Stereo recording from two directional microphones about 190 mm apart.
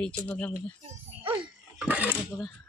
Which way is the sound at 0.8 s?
30° right (ahead or behind).